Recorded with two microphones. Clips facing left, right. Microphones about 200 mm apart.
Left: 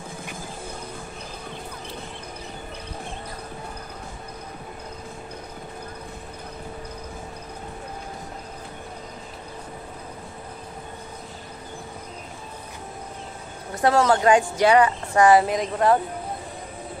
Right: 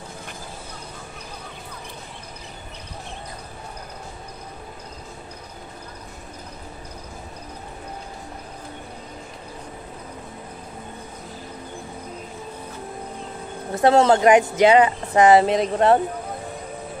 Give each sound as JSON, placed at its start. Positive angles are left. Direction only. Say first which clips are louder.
{"t": 13.7, "sound": "speech", "louder": "right 4 dB", "side_deg": -25}